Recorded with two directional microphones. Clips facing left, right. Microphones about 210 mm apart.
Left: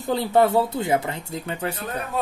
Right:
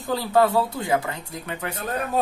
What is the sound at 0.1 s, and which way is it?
Speech, 25° left (ahead or behind).